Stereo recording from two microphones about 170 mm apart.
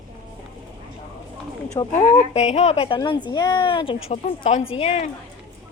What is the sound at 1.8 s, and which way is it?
Speech, 25° left (ahead or behind).